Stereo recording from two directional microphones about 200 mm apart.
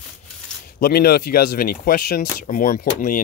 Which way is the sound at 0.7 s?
50° left (ahead or behind).